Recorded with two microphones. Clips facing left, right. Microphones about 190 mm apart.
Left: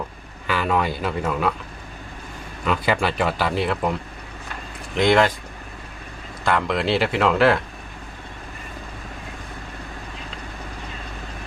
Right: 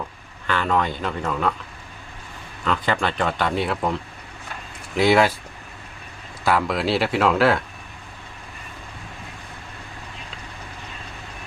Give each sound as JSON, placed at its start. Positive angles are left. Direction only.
{"t": 0.4, "sound": "speech", "side_deg": 10}
{"t": 2.6, "sound": "speech", "side_deg": 10}
{"t": 4.9, "sound": "speech", "side_deg": -5}
{"t": 6.4, "sound": "speech", "side_deg": -5}